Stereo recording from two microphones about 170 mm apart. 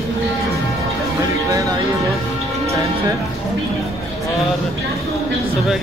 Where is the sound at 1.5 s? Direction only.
20° right (ahead or behind).